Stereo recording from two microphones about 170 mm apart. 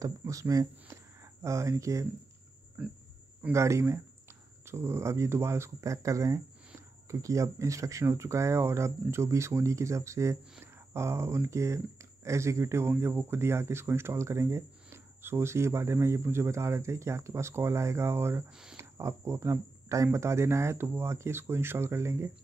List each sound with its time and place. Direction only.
0.0 s speech: 20° right (ahead or behind)
2.8 s speech: 5° right (ahead or behind)